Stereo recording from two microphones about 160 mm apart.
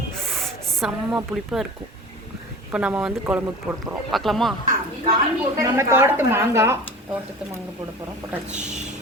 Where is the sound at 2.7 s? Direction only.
5° right (ahead or behind).